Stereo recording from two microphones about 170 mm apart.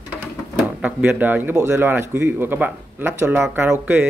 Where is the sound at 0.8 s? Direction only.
10° right (ahead or behind).